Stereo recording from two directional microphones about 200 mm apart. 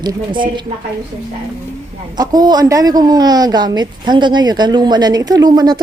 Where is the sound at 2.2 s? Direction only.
20° right (ahead or behind).